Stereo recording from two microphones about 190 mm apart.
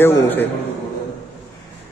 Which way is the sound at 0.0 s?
10° left (ahead or behind).